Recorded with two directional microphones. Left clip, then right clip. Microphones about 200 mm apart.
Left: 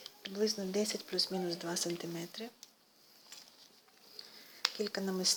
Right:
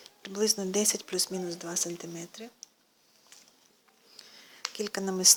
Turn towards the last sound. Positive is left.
turn(degrees=-25)  # may be behind; listen again after turning